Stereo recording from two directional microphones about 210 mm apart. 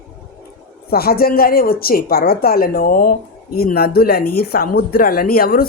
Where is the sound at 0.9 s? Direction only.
45° left (ahead or behind).